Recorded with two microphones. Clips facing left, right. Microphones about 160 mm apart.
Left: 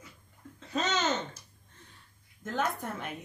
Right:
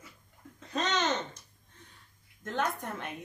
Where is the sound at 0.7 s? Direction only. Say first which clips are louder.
Even; 5° left (ahead or behind).